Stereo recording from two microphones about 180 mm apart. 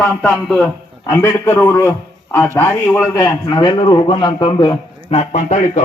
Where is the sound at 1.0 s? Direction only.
15° left (ahead or behind).